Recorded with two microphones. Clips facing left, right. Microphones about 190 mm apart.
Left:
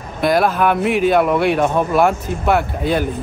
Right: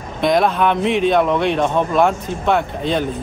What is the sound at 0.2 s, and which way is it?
Speech, 5° left (ahead or behind).